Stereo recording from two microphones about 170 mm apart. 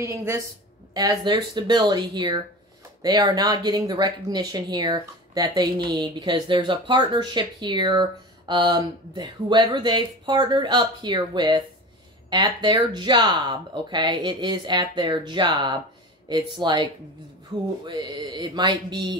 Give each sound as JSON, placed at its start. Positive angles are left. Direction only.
{"t": 0.0, "sound": "speech", "side_deg": -15}